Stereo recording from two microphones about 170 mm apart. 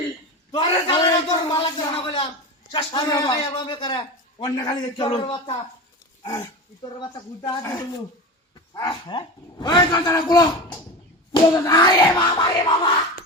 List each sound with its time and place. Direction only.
0.5 s a sound: 30° left (ahead or behind)
2.7 s a man's voice: 25° left (ahead or behind)
7.0 s a man's voice: 25° left (ahead or behind)